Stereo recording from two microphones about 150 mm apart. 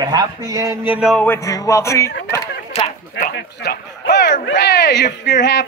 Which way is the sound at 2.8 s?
40° left (ahead or behind).